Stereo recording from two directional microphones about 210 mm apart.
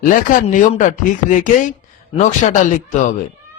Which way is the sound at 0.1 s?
40° left (ahead or behind).